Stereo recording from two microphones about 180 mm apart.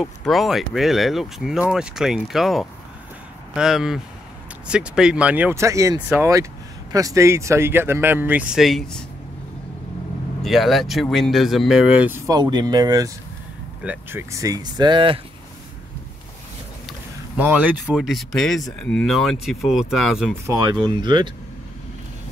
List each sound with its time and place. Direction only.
0.0 s speech: centre (ahead or behind)
10.4 s speech: centre (ahead or behind); by 15.1 s 25° right (ahead or behind)
17.4 s speech: 10° right (ahead or behind)
20.4 s speech: 20° right (ahead or behind)